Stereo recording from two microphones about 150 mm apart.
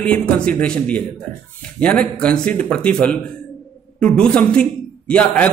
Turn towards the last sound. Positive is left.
turn(degrees=5)  # may be behind; listen again after turning